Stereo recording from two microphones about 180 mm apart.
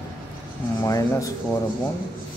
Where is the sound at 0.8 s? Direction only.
20° left (ahead or behind).